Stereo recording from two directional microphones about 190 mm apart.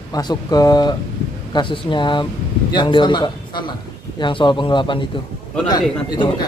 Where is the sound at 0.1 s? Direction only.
20° left (ahead or behind).